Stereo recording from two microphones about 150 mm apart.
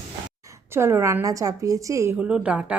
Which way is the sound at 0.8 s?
20° right (ahead or behind).